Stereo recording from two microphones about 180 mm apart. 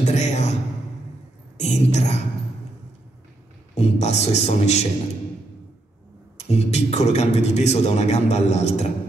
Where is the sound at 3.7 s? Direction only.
40° left (ahead or behind).